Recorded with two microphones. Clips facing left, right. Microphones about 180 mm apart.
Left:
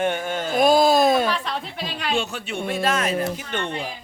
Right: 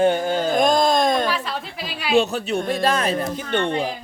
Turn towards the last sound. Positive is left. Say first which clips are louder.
# right 6 dB
turn(degrees=-40)  # may be behind; listen again after turning